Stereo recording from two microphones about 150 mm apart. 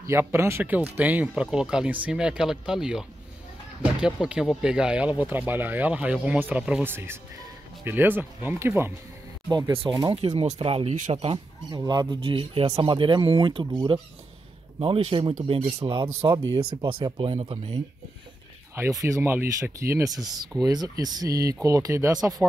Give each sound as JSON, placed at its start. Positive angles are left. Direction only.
{"t": 0.0, "sound": "speech", "side_deg": -15}
{"t": 10.1, "sound": "speech", "side_deg": -35}
{"t": 11.7, "sound": "speech", "side_deg": -25}
{"t": 16.2, "sound": "speech", "side_deg": -20}
{"t": 17.4, "sound": "speech", "side_deg": -45}
{"t": 18.8, "sound": "speech", "side_deg": -15}